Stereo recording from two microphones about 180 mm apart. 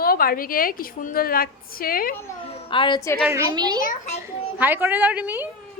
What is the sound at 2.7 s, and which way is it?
Speech, 25° left (ahead or behind).